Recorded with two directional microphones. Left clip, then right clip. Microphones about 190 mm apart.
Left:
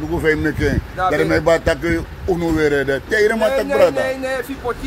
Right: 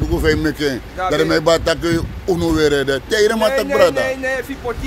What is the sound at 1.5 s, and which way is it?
Speech, 25° right (ahead or behind).